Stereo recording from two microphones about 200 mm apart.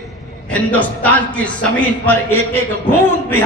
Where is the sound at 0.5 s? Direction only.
5° left (ahead or behind).